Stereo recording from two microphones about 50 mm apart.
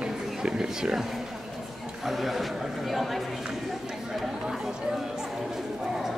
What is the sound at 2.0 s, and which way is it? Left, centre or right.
Speech, centre.